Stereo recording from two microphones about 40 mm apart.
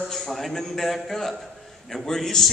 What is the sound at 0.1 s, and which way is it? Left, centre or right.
A man's voice, centre.